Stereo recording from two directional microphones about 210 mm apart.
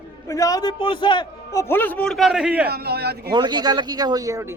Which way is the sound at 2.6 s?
50° right (ahead or behind).